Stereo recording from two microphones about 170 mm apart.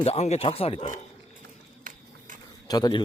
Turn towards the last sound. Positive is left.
turn(degrees=20)  # may be behind; listen again after turning